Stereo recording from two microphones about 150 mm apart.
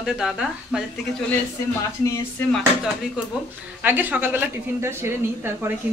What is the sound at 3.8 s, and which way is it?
A woman's voice, 10° right (ahead or behind).